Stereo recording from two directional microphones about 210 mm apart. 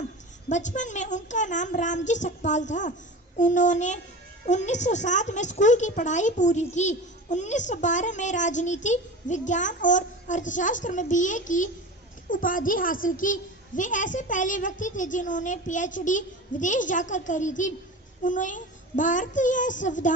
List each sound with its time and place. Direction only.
0.4 s a woman's voice: 35° left (ahead or behind)